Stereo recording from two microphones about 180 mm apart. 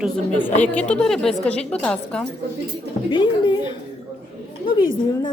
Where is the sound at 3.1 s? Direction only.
25° left (ahead or behind).